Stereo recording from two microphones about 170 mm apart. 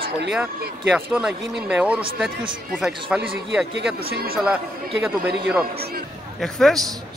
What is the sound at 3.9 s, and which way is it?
Speech, 65° right (ahead or behind).